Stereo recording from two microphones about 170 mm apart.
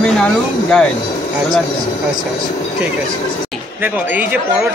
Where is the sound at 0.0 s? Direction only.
5° left (ahead or behind).